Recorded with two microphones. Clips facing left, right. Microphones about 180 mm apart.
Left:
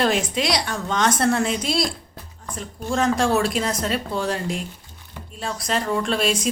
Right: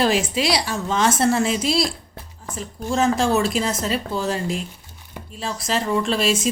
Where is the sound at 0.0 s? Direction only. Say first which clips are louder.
Right 1 dB; 5° right (ahead or behind).